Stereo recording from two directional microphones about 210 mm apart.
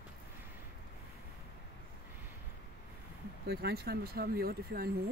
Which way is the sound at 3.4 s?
50° right (ahead or behind).